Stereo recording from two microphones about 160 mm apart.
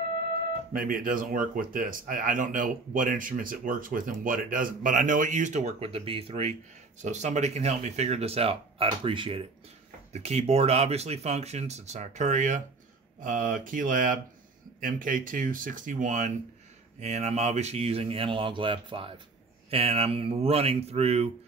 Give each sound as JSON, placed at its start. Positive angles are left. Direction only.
{"t": 0.7, "sound": "speech", "side_deg": -60}